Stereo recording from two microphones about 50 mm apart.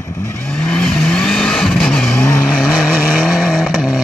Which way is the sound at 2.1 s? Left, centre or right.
Left.